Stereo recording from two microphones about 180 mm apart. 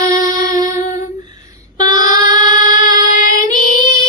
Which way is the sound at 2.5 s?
45° left (ahead or behind).